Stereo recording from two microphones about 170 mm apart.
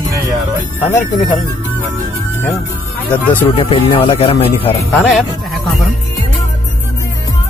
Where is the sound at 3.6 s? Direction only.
30° left (ahead or behind).